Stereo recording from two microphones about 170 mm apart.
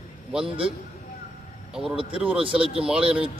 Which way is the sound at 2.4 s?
30° right (ahead or behind).